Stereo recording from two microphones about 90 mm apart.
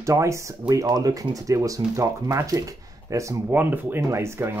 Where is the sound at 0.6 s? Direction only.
45° right (ahead or behind).